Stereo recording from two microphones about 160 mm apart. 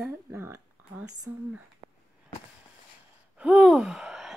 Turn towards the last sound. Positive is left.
turn(degrees=0)  # may be behind; listen again after turning